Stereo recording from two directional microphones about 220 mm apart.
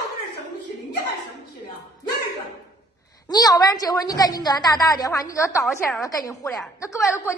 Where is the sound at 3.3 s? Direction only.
15° left (ahead or behind).